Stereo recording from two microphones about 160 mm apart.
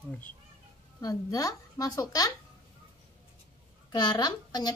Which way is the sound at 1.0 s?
20° left (ahead or behind).